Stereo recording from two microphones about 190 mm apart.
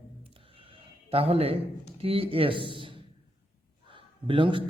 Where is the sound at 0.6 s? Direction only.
30° right (ahead or behind).